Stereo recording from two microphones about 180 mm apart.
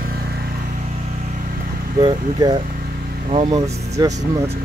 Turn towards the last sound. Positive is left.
turn(degrees=-20)  # may be behind; listen again after turning